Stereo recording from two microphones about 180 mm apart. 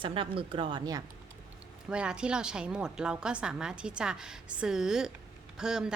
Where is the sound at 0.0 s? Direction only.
30° right (ahead or behind).